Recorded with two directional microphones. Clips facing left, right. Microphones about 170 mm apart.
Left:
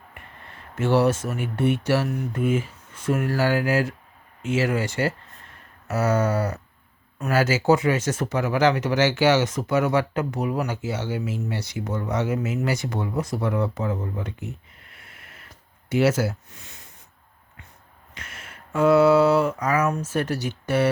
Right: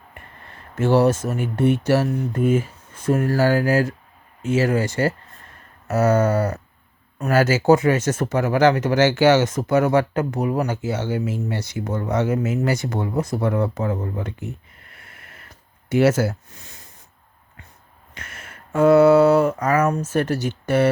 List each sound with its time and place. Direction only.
0.8 s speech: 40° right (ahead or behind)
15.9 s speech: 50° right (ahead or behind)
18.1 s speech: 50° right (ahead or behind)